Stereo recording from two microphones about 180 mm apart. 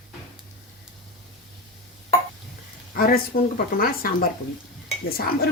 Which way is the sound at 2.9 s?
55° left (ahead or behind).